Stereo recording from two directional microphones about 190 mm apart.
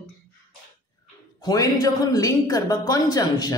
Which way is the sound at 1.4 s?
20° left (ahead or behind).